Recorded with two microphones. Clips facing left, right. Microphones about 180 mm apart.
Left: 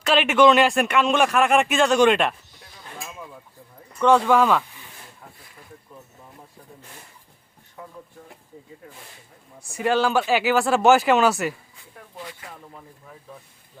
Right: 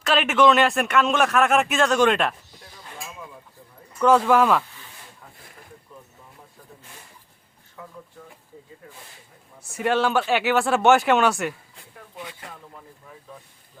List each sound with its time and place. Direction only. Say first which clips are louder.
0.0 s speech: left 2 dB; centre (ahead or behind)
4.0 s speech: even; 5° right (ahead or behind)
9.6 s speech: left 1 dB; 5° right (ahead or behind)